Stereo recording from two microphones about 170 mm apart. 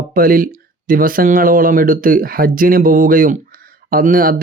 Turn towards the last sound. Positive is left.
turn(degrees=-55)  # may be behind; listen again after turning